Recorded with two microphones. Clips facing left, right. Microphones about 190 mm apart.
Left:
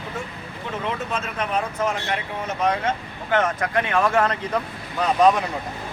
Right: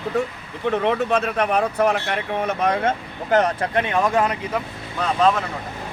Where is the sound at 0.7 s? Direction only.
65° right (ahead or behind).